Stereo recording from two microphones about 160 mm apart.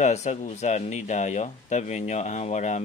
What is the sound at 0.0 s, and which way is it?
Speech, 45° left (ahead or behind).